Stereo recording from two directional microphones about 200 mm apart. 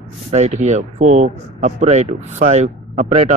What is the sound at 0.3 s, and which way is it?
Speech, 35° right (ahead or behind).